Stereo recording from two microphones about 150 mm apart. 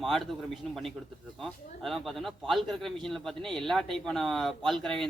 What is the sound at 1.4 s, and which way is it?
A man's voice, centre (ahead or behind).